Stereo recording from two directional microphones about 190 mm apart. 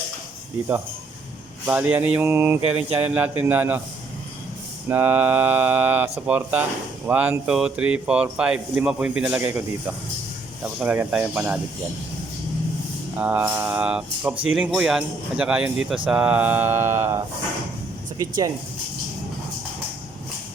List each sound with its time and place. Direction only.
1.6 s speech: 10° right (ahead or behind)
4.9 s speech: 10° right (ahead or behind)
13.1 s speech: 10° right (ahead or behind)
18.2 s speech: 20° right (ahead or behind)